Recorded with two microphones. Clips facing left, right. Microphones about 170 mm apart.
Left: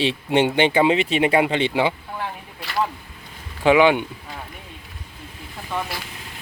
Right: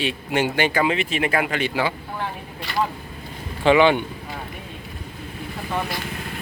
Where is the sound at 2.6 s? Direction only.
Centre (ahead or behind).